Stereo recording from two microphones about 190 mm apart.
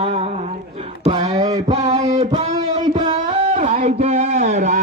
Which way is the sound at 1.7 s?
35° right (ahead or behind).